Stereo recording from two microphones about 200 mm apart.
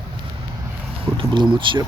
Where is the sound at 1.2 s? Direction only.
25° right (ahead or behind).